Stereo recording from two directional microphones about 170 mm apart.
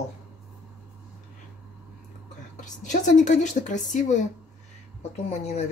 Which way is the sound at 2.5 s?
45° left (ahead or behind).